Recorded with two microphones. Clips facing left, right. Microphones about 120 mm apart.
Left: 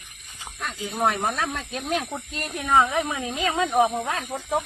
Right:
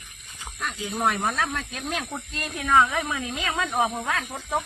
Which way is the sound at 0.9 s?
30° left (ahead or behind).